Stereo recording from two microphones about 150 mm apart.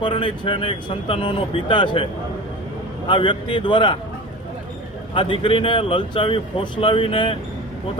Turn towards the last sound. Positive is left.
turn(degrees=35)  # may be behind; listen again after turning